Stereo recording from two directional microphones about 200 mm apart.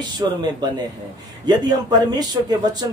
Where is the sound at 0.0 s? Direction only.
20° right (ahead or behind).